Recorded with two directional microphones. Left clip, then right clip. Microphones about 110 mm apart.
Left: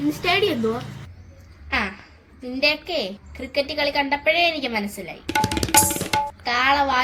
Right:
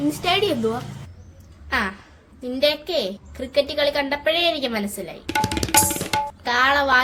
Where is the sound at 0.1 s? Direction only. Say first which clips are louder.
Left 1 dB; 40° right (ahead or behind).